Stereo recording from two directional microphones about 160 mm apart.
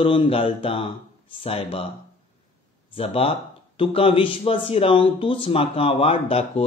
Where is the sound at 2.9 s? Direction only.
35° left (ahead or behind).